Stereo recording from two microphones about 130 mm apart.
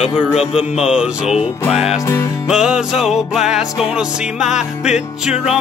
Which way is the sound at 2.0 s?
20° left (ahead or behind).